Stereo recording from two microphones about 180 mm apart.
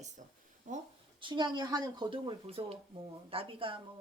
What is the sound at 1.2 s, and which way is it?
Speech, 25° right (ahead or behind).